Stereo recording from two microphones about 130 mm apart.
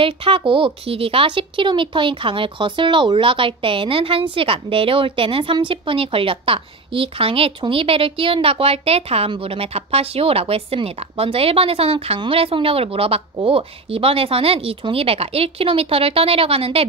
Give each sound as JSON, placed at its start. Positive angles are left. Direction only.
{"t": 0.0, "sound": "speech", "side_deg": -45}